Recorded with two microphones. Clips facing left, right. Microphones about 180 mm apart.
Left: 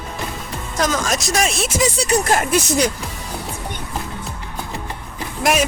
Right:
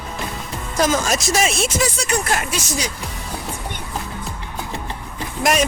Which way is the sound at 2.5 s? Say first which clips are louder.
Left 8 dB; 55° left (ahead or behind).